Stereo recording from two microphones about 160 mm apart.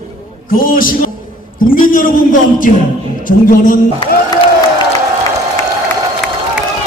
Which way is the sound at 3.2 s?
60° left (ahead or behind).